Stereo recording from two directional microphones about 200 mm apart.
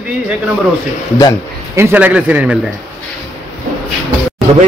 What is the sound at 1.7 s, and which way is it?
Speech, 10° right (ahead or behind).